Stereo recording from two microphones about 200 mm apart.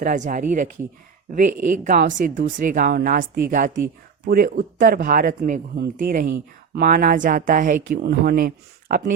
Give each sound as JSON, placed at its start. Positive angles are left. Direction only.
{"t": 0.0, "sound": "speech", "side_deg": -40}